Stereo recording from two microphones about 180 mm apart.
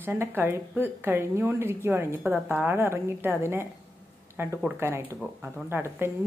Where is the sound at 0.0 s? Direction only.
15° right (ahead or behind).